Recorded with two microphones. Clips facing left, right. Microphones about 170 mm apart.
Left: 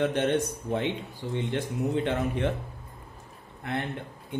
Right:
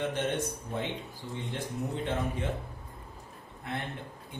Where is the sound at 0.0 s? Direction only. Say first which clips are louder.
Left 6 dB; 65° left (ahead or behind).